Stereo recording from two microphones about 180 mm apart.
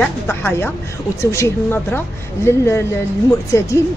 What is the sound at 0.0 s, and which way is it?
Speech, 10° left (ahead or behind).